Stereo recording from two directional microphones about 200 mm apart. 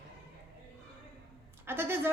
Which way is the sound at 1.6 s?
10° right (ahead or behind).